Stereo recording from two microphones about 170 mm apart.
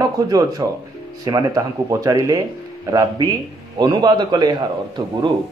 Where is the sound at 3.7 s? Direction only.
25° right (ahead or behind).